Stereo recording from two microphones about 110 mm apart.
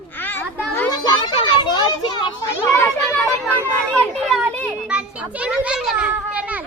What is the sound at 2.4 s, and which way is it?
Speech, 20° left (ahead or behind).